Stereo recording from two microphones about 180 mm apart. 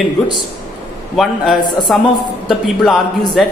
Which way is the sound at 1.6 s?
25° left (ahead or behind).